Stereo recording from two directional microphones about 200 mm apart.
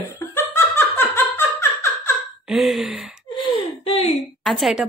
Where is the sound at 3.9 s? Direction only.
30° left (ahead or behind).